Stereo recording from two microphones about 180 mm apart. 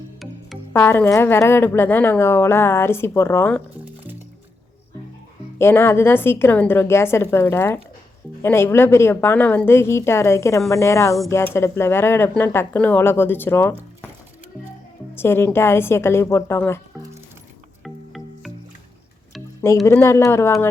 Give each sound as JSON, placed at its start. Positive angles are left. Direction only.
{"t": 0.7, "sound": "speech", "side_deg": 10}
{"t": 5.5, "sound": "speech", "side_deg": 15}
{"t": 15.1, "sound": "speech", "side_deg": 10}
{"t": 17.8, "sound": "music", "side_deg": 0}
{"t": 19.6, "sound": "speech", "side_deg": 15}